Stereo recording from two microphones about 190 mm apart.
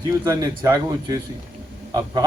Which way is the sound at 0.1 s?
15° right (ahead or behind).